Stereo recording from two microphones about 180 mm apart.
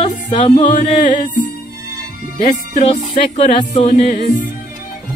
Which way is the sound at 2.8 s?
35° left (ahead or behind).